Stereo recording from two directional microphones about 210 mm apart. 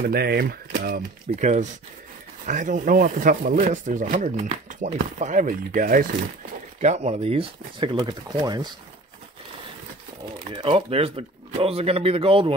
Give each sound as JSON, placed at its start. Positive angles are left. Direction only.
{"t": 0.0, "sound": "speech", "side_deg": -50}
{"t": 10.4, "sound": "speech", "side_deg": -25}